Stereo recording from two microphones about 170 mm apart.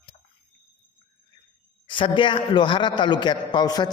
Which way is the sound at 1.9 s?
30° left (ahead or behind).